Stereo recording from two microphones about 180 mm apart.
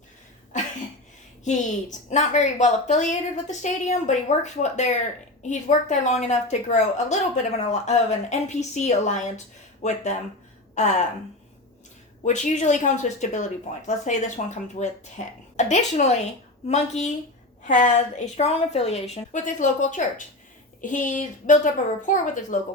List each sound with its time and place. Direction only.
1.5 s a woman's voice: 40° left (ahead or behind)
12.2 s a woman's voice: 40° left (ahead or behind)